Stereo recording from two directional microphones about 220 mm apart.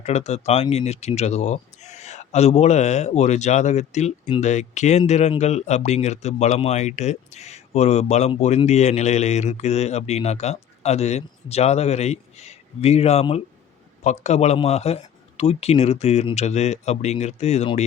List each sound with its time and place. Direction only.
0.0 s speech: 30° left (ahead or behind)